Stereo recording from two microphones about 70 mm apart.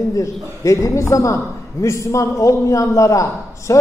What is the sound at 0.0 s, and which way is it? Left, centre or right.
A woman's voice, left.